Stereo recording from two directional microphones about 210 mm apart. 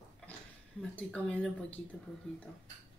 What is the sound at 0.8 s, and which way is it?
Speech, 5° left (ahead or behind).